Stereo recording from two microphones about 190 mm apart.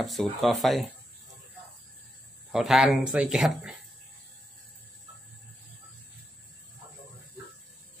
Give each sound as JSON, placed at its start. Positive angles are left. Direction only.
{"t": 0.0, "sound": "speech", "side_deg": 0}
{"t": 2.5, "sound": "speech", "side_deg": 0}